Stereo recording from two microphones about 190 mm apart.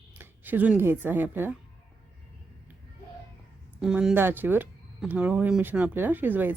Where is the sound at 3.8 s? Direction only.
5° right (ahead or behind).